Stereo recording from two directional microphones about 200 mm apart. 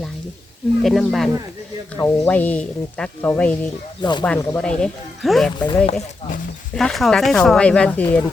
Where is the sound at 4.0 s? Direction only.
20° left (ahead or behind).